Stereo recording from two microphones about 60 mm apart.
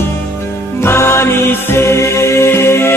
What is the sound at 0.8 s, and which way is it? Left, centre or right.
Music, left.